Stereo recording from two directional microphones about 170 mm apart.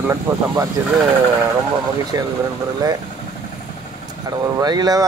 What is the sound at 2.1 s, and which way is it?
Speech, 20° right (ahead or behind).